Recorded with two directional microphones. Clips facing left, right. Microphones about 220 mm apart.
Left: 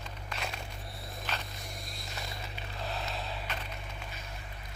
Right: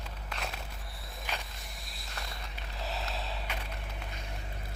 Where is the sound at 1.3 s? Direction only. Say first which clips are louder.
Even; 10° right (ahead or behind).